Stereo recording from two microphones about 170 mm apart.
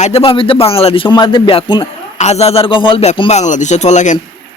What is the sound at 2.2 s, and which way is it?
A man's voice, 40° left (ahead or behind).